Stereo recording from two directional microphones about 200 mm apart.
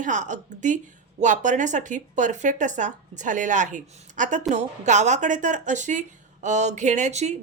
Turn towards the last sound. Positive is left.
turn(degrees=-35)  # may be behind; listen again after turning